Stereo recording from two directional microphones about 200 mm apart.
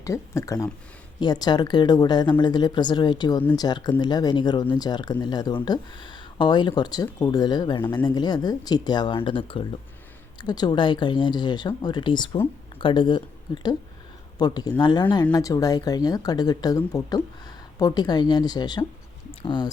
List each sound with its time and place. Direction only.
0.0 s speech: 15° left (ahead or behind)